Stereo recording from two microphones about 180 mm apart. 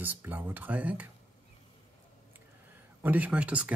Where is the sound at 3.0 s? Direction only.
10° right (ahead or behind).